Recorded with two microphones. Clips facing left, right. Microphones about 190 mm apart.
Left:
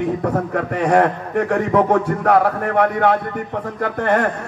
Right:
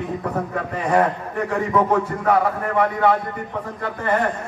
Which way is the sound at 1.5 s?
65° left (ahead or behind).